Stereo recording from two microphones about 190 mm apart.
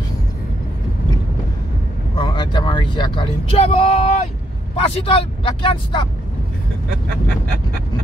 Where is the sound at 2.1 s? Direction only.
25° left (ahead or behind).